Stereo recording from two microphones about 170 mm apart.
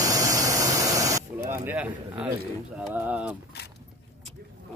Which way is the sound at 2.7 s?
10° right (ahead or behind).